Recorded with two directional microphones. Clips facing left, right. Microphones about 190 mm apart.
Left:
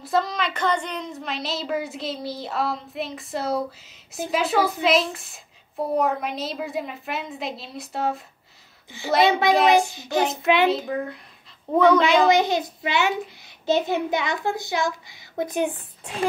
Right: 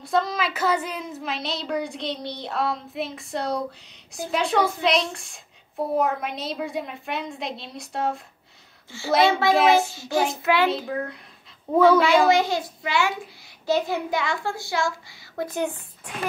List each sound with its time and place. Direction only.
0.0 s speech: centre (ahead or behind)
9.2 s a child's voice: 20° left (ahead or behind)
9.5 s speech: centre (ahead or behind)
9.8 s a child's voice: 15° left (ahead or behind)
10.9 s speech: centre (ahead or behind)
12.0 s a child's voice: 20° left (ahead or behind)